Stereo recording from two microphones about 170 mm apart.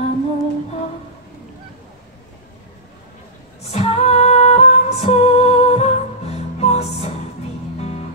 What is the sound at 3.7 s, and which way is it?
Music, 35° left (ahead or behind).